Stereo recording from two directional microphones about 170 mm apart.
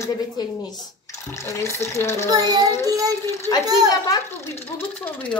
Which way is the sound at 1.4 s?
15° left (ahead or behind).